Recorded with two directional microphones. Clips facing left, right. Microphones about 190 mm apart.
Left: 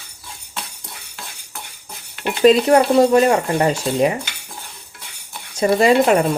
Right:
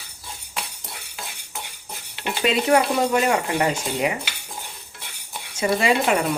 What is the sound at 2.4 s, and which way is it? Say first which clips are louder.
Speech: left 7 dB; 40° left (ahead or behind).